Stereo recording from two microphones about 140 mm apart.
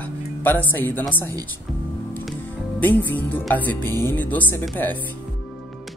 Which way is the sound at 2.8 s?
15° left (ahead or behind).